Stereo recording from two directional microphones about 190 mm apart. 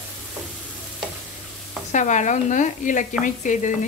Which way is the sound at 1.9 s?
40° left (ahead or behind).